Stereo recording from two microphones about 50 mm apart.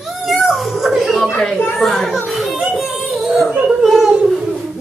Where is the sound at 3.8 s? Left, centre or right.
Centre.